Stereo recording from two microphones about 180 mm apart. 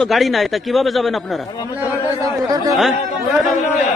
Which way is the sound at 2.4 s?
20° right (ahead or behind).